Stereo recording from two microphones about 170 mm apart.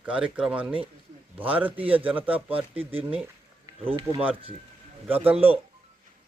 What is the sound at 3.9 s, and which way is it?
Speech, 30° right (ahead or behind).